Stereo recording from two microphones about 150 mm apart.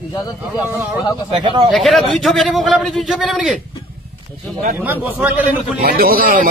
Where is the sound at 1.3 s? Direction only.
35° right (ahead or behind).